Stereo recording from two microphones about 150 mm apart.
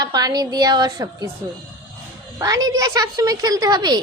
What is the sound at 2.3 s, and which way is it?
Speech, 25° right (ahead or behind).